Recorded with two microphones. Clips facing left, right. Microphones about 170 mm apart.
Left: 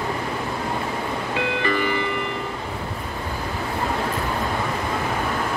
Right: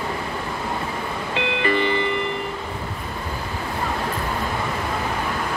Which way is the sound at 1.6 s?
25° right (ahead or behind).